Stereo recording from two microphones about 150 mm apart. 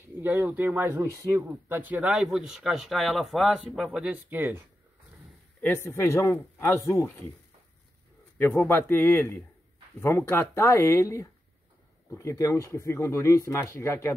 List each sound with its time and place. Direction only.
0.2 s speech: 15° right (ahead or behind)
5.6 s speech: 15° left (ahead or behind)
8.4 s speech: 15° left (ahead or behind)